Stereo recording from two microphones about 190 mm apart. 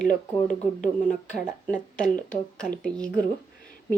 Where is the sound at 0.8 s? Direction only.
40° left (ahead or behind).